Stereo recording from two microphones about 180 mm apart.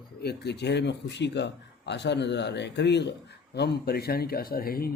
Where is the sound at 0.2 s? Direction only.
65° left (ahead or behind).